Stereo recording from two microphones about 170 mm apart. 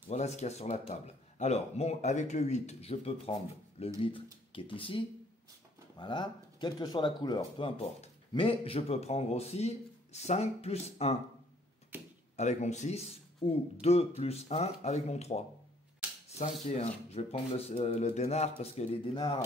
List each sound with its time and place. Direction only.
0.1 s speech: 40° left (ahead or behind)
12.4 s speech: 40° left (ahead or behind)
16.3 s rub: 40° left (ahead or behind)
16.6 s speech: 35° left (ahead or behind)